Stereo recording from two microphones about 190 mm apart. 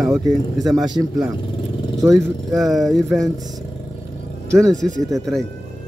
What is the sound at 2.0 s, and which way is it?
Speech, centre (ahead or behind).